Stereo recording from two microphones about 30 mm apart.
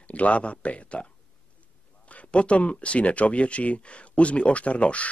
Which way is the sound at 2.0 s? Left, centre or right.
Left.